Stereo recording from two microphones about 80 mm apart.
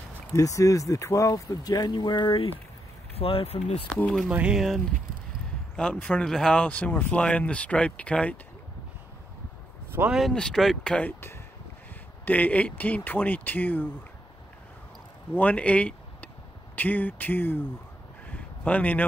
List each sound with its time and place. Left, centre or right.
0.3 s speech: left
3.5 s speech: left
3.9 s speech: centre
4.3 s speech: centre
4.6 s speech: centre
5.8 s speech: centre
10.3 s speech: centre
11.1 s speech: left
12.3 s speech: centre
15.3 s speech: centre